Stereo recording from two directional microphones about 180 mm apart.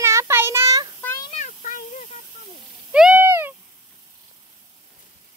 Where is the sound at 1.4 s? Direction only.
45° left (ahead or behind).